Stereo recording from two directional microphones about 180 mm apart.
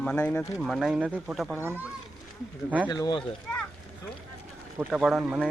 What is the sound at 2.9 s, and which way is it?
Speech, 20° left (ahead or behind).